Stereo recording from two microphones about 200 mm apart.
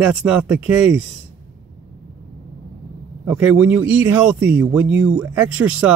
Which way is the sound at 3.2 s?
5° right (ahead or behind).